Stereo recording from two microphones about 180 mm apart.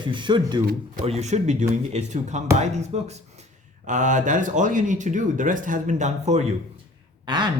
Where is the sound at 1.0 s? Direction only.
35° right (ahead or behind).